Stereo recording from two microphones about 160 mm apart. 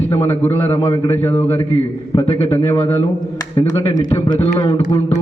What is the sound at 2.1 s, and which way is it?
Speech, 30° left (ahead or behind).